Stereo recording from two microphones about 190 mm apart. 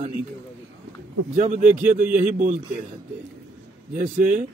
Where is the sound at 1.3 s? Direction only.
40° right (ahead or behind).